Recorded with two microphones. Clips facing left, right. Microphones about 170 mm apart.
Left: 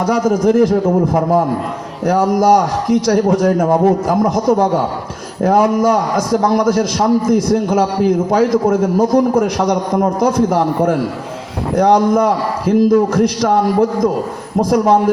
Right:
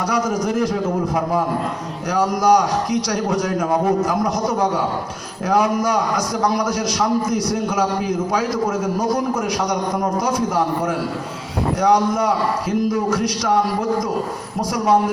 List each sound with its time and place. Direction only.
0.0 s a man's voice: 50° left (ahead or behind)
5.4 s a man's voice: 50° left (ahead or behind)
14.6 s a man's voice: 55° left (ahead or behind)